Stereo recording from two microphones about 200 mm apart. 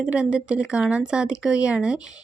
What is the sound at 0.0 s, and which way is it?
Speech, 5° right (ahead or behind).